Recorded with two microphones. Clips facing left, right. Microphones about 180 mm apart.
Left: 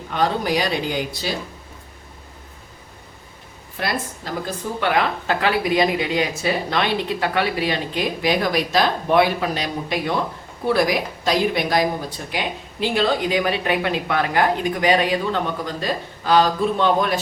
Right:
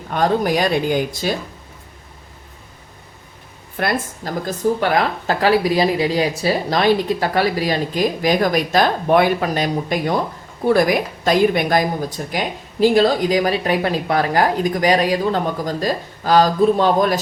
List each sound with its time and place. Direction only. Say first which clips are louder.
0.1 s speech: right 3 dB; 45° right (ahead or behind)
3.8 s speech: right 4 dB; 50° right (ahead or behind)